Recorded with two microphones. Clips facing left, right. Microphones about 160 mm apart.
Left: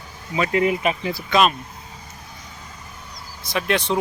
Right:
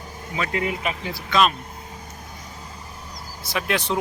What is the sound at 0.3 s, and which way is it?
Speech, 15° left (ahead or behind).